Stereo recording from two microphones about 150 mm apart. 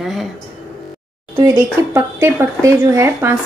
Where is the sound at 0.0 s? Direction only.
Centre (ahead or behind).